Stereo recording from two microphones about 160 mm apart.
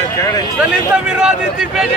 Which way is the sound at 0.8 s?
5° right (ahead or behind).